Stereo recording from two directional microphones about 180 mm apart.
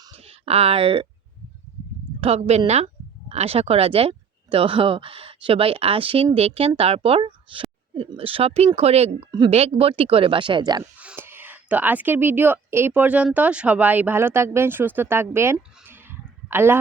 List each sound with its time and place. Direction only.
0.2 s speech: 35° right (ahead or behind)
2.2 s a woman's voice: 35° right (ahead or behind)
11.0 s a woman's voice: 10° right (ahead or behind)
15.5 s a sound: 10° right (ahead or behind)